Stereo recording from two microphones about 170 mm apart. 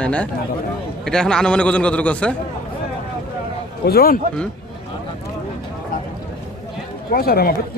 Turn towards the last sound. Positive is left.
turn(degrees=65)  # may be behind; listen again after turning